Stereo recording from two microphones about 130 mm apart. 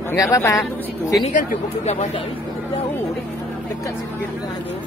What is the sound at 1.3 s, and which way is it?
Speech, 80° left.